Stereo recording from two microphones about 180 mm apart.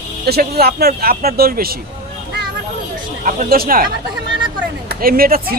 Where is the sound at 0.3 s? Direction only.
60° right (ahead or behind).